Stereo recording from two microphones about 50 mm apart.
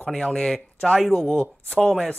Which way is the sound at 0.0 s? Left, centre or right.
Centre.